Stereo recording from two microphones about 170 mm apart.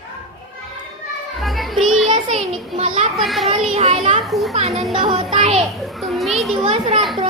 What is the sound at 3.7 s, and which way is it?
Speech, 35° right (ahead or behind).